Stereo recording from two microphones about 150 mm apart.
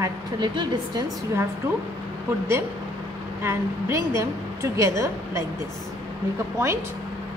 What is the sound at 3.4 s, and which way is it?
A woman's voice, 20° right (ahead or behind).